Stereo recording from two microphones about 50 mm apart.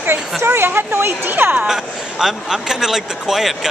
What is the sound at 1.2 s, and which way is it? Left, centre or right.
Speech, right.